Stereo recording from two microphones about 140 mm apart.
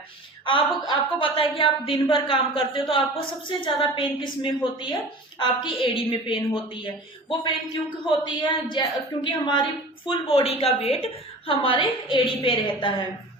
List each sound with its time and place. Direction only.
0.4 s a woman's voice: 35° left (ahead or behind)